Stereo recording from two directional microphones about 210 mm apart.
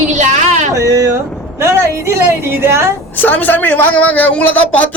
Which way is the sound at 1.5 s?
15° right (ahead or behind).